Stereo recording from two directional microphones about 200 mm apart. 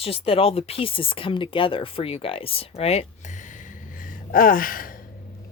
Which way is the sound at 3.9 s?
45° left (ahead or behind).